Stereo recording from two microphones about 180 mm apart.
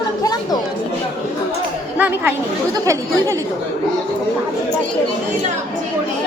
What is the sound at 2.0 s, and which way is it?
Speech, 10° right (ahead or behind).